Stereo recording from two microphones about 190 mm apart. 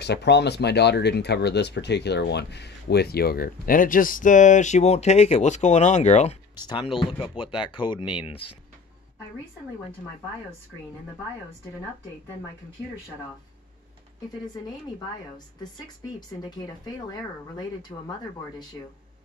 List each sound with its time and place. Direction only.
0.0 s speech: 60° left (ahead or behind); by 6.3 s 35° left (ahead or behind)
6.5 s speech: 20° left (ahead or behind)
16.2 s speech: 20° left (ahead or behind)